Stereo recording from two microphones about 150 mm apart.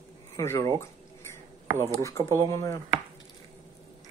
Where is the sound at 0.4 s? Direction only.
20° left (ahead or behind).